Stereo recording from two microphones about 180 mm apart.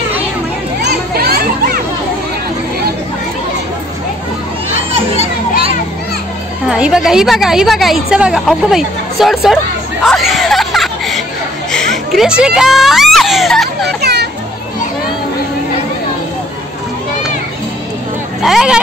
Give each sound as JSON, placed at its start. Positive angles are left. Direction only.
{"t": 0.8, "sound": "children playing", "side_deg": -60}
{"t": 4.9, "sound": "children playing", "side_deg": -35}
{"t": 6.7, "sound": "a woman's voice", "side_deg": -5}
{"t": 10.0, "sound": "music", "side_deg": 0}
{"t": 11.7, "sound": "speech", "side_deg": 0}
{"t": 13.8, "sound": "children playing", "side_deg": -65}
{"t": 18.4, "sound": "a woman's voice", "side_deg": 0}